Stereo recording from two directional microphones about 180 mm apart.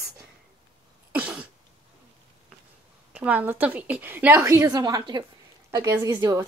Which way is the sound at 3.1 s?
10° right (ahead or behind).